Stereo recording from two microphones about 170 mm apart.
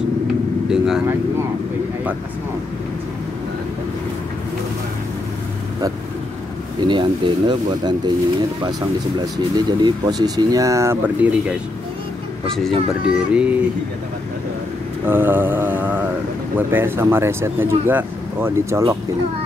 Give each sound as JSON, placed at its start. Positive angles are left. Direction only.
{"t": 0.7, "sound": "speech", "side_deg": -5}
{"t": 6.8, "sound": "speech", "side_deg": -30}
{"t": 9.2, "sound": "speech", "side_deg": -25}
{"t": 12.4, "sound": "speech", "side_deg": 5}
{"t": 15.0, "sound": "speech", "side_deg": -10}